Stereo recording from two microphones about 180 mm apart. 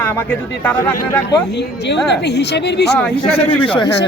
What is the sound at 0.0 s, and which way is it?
Speech, 10° left (ahead or behind).